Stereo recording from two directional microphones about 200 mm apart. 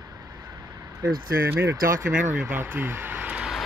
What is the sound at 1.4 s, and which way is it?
Speech, 10° right (ahead or behind).